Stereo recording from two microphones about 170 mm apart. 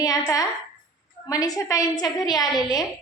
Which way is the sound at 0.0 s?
20° left (ahead or behind).